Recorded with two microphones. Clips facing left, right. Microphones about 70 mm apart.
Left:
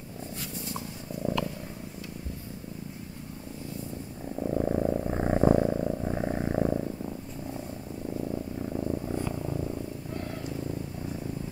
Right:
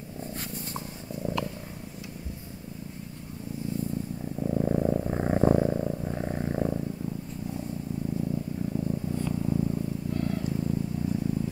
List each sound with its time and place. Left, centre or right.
4.4 s purr: centre
8.7 s purr: left